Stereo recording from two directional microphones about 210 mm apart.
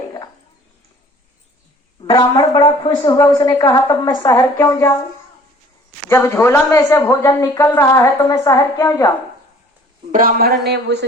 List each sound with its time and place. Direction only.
2.0 s a woman's voice: 15° left (ahead or behind)
6.1 s a woman's voice: 10° left (ahead or behind)
10.1 s speech: 40° right (ahead or behind)